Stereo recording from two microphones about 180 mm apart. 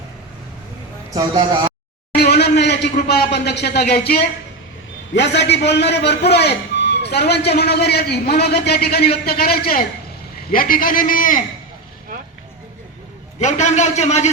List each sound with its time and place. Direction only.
1.1 s speech: 20° right (ahead or behind)
2.1 s a sound: 65° left (ahead or behind)
2.9 s a man's voice: 60° left (ahead or behind)
5.1 s a man's voice: 75° left (ahead or behind); by 11.3 s 50° left (ahead or behind)
13.4 s speech: 40° left (ahead or behind)